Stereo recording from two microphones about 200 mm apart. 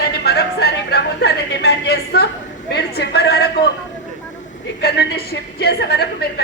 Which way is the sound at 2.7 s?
55° left (ahead or behind).